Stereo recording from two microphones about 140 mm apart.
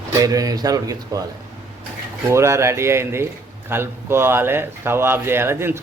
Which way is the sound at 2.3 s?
20° right (ahead or behind).